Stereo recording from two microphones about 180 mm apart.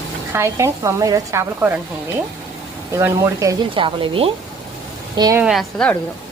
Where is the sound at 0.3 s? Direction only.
15° right (ahead or behind).